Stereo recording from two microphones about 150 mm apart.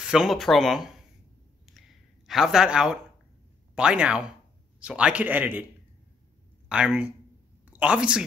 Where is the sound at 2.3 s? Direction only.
Centre (ahead or behind).